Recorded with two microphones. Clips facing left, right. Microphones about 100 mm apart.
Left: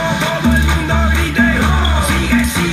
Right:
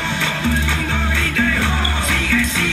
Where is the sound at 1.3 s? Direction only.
20° left (ahead or behind).